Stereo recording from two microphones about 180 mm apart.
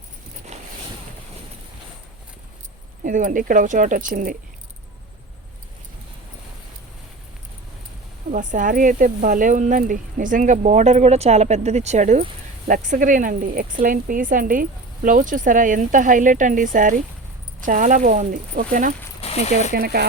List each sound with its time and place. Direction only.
0.5 s boat: 35° right (ahead or behind)
3.0 s speech: 50° right (ahead or behind)
8.3 s speech: 45° right (ahead or behind)
19.2 s speech: 35° left (ahead or behind)
19.7 s speech: 60° right (ahead or behind)